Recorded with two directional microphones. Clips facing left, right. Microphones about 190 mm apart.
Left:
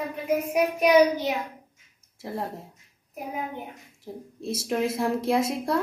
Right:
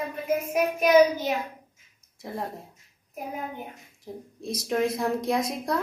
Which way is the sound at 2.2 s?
Centre (ahead or behind).